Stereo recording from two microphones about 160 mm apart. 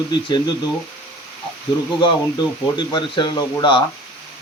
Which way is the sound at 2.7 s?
30° left (ahead or behind).